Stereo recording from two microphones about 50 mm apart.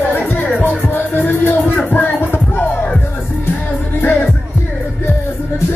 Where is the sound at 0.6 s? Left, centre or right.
Left.